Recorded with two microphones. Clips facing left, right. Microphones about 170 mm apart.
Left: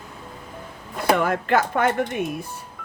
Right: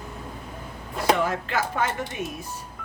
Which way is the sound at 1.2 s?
55° left (ahead or behind).